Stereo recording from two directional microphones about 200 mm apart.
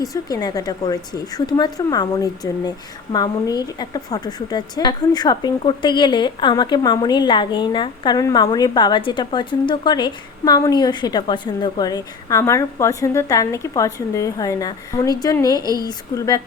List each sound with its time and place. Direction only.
0.0 s speech: 15° left (ahead or behind)